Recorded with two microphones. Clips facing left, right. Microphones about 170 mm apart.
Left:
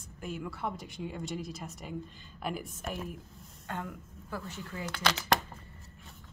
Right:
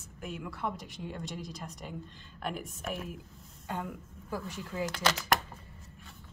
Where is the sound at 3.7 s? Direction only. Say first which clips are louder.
Right 2 dB; 15° right (ahead or behind).